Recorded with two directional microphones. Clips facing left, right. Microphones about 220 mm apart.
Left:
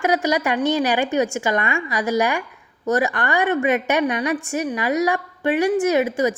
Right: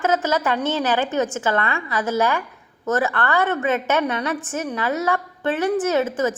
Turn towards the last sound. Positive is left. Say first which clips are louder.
# left 2 dB
turn(degrees=15)  # may be behind; listen again after turning